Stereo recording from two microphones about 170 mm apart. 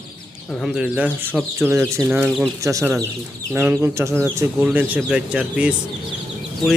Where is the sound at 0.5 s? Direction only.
Centre (ahead or behind).